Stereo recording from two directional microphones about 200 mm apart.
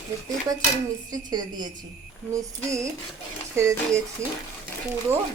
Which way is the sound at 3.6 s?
15° right (ahead or behind).